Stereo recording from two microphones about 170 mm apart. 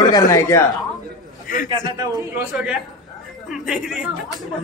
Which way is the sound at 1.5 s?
50° left (ahead or behind).